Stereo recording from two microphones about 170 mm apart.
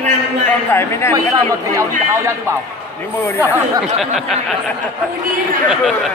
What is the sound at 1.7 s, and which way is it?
Speech, 15° right (ahead or behind).